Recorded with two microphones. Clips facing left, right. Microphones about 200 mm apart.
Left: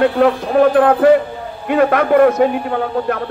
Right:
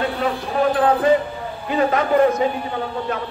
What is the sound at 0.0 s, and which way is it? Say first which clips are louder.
A man's voice: left 9 dB; 65° left (ahead or behind).